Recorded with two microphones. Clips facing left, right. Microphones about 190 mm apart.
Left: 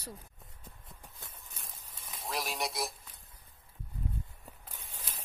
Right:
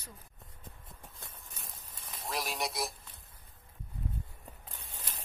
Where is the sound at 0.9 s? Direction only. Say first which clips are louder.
Even; centre (ahead or behind).